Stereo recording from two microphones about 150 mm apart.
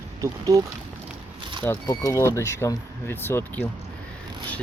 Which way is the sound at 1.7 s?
20° left (ahead or behind).